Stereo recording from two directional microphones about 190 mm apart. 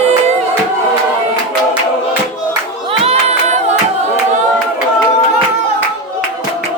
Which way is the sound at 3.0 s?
35° right (ahead or behind).